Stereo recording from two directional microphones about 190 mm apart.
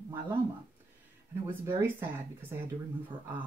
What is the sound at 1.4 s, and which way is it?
Speech, 10° right (ahead or behind).